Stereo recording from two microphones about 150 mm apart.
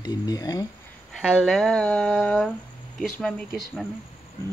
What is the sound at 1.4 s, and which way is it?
Speech, 5° left (ahead or behind).